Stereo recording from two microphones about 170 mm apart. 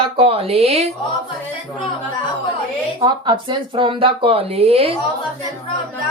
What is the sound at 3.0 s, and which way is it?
Speech, 25° right (ahead or behind).